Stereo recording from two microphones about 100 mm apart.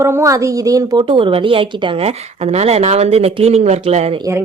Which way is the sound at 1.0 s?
60° right (ahead or behind).